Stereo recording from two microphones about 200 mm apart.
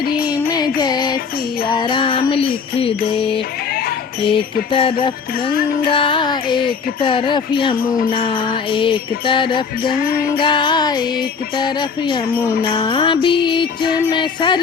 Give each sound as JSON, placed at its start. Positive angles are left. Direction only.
{"t": 0.0, "sound": "music", "side_deg": 45}
{"t": 0.4, "sound": "music", "side_deg": 20}
{"t": 1.6, "sound": "speech", "side_deg": 25}
{"t": 3.7, "sound": "a sound", "side_deg": 50}
{"t": 4.3, "sound": "speech", "side_deg": 25}
{"t": 9.9, "sound": "music", "side_deg": 45}
{"t": 10.4, "sound": "speech", "side_deg": 25}